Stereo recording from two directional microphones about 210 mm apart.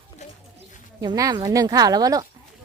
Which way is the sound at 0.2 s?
35° left (ahead or behind).